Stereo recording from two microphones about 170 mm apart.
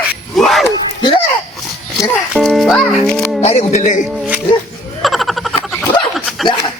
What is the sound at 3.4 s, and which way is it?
Speech, 40° left (ahead or behind).